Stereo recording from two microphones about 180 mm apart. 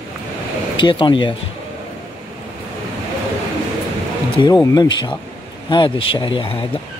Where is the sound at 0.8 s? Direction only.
25° left (ahead or behind).